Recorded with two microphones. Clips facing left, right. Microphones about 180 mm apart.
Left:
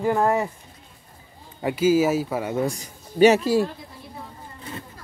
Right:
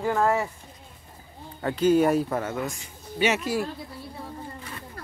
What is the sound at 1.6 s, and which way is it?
Speech, 10° left (ahead or behind).